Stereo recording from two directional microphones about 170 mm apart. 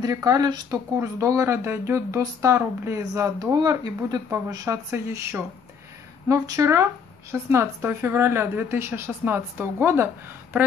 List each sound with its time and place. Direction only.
0.0 s speech: 20° right (ahead or behind)